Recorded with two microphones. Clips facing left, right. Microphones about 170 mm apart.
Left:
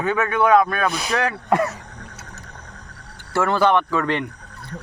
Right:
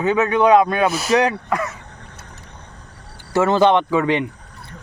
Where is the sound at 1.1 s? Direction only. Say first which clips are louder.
Right 9 dB; 20° right (ahead or behind).